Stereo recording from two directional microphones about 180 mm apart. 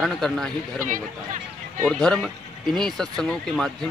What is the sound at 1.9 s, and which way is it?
Speech, 5° left (ahead or behind).